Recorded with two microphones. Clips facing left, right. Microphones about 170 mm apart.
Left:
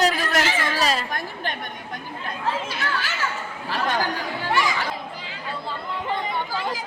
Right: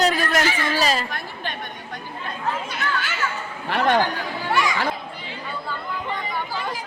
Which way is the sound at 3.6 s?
60° right (ahead or behind).